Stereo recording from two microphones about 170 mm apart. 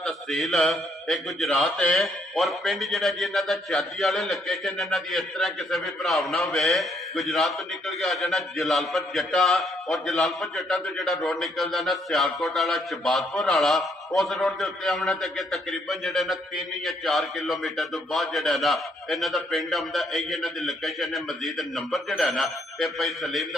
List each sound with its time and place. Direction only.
0.0 s a man's voice: centre (ahead or behind)